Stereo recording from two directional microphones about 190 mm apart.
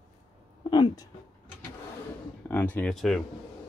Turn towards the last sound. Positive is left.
turn(degrees=0)  # may be behind; listen again after turning